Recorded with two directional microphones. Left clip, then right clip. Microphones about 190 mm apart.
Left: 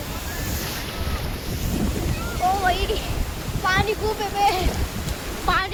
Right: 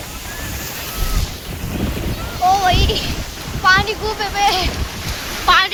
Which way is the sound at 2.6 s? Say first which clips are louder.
Right 6 dB; 10° right (ahead or behind).